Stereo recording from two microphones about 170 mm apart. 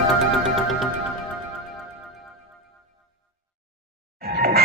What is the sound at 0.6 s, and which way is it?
Music, centre (ahead or behind).